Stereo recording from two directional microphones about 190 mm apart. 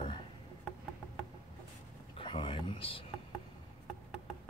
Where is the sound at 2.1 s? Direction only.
25° left (ahead or behind).